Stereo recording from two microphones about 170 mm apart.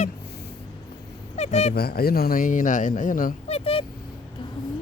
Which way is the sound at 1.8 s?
65° left (ahead or behind).